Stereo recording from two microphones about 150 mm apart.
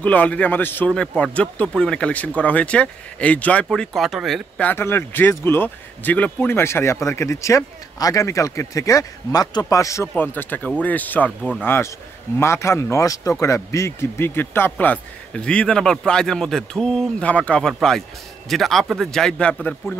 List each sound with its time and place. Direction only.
0.0 s a man's voice: 10° left (ahead or behind)
4.6 s a man's voice: 15° left (ahead or behind)